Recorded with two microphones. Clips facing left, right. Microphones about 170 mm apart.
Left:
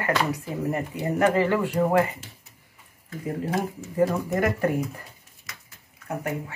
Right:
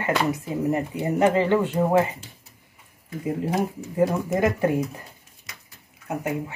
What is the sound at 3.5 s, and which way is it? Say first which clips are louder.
Speech: right 2 dB; 15° right (ahead or behind).